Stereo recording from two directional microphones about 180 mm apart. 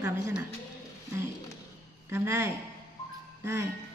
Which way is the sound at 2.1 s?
15° right (ahead or behind).